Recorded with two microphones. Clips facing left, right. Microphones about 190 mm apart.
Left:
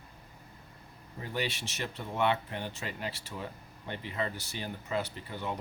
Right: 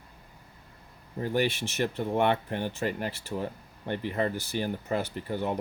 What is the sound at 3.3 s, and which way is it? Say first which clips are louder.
Speech: right 12 dB; 40° right (ahead or behind).